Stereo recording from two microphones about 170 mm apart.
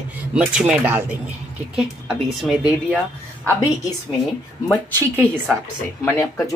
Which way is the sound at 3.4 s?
20° left (ahead or behind).